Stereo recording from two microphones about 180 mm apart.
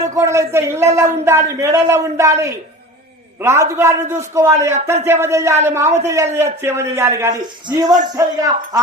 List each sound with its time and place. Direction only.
0.0 s a man's voice: 20° right (ahead or behind)